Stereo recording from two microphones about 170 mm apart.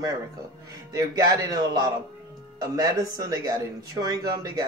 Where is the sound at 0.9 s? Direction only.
20° right (ahead or behind).